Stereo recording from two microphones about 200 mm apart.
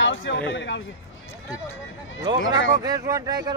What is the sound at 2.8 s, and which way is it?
Speech, 20° right (ahead or behind).